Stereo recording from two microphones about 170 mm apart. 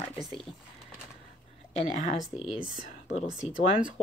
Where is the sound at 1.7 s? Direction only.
40° left (ahead or behind).